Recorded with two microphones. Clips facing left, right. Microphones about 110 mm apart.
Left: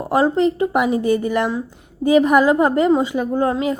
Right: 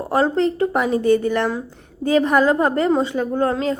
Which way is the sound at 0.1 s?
15° left (ahead or behind).